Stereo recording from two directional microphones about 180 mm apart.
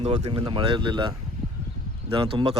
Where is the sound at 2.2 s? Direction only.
30° right (ahead or behind).